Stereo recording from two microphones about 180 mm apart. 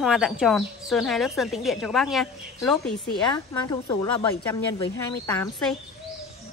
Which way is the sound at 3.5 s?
15° left (ahead or behind).